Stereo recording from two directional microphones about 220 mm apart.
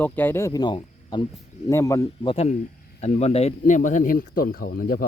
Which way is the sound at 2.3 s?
30° left (ahead or behind).